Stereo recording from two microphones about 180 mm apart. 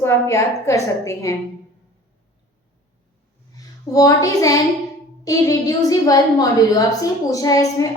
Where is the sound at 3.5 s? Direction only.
20° left (ahead or behind).